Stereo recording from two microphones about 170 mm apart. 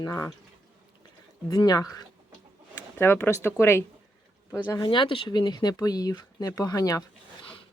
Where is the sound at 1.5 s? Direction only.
20° left (ahead or behind).